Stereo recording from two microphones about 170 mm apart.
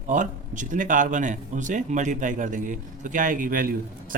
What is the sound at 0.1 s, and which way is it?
Speech, 50° right (ahead or behind).